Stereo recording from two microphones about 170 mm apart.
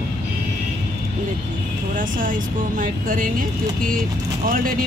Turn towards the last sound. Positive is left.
turn(degrees=-55)  # may be behind; listen again after turning